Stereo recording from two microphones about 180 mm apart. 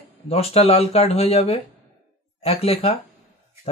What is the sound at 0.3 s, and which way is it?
Speech, 35° left (ahead or behind).